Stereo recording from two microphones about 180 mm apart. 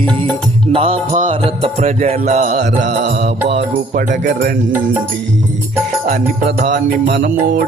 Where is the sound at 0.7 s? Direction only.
30° right (ahead or behind).